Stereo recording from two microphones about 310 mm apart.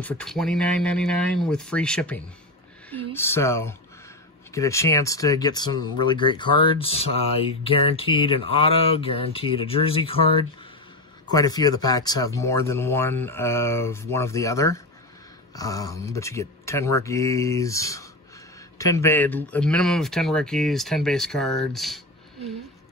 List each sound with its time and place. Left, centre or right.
0.0 s speech: centre